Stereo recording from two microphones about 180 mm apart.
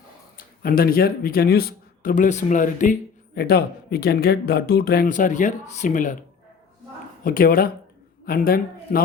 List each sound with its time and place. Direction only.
0.3 s speech: 55° left (ahead or behind)
3.3 s speech: 60° left (ahead or behind)
7.3 s speech: 55° left (ahead or behind)